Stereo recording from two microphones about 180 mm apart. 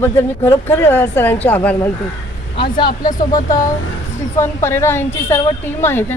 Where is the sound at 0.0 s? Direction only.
10° left (ahead or behind).